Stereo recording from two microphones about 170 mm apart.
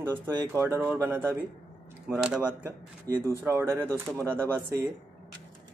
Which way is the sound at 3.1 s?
20° right (ahead or behind).